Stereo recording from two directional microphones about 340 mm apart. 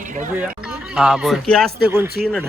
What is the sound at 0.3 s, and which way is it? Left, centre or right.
Speech, centre.